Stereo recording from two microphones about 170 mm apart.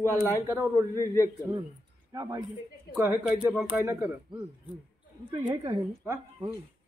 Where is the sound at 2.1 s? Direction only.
20° right (ahead or behind).